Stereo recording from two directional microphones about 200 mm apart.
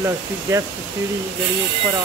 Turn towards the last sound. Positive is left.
turn(degrees=-15)  # may be behind; listen again after turning